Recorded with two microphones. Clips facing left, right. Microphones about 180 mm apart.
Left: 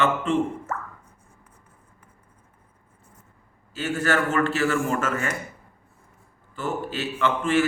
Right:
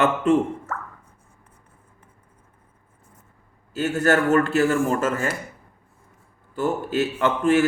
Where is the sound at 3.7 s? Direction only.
40° right (ahead or behind).